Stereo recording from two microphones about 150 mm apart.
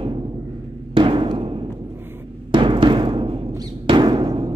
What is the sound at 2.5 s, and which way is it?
Music, 35° right (ahead or behind).